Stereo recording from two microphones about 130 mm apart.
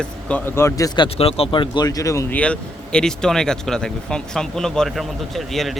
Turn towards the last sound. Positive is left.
turn(degrees=0)  # may be behind; listen again after turning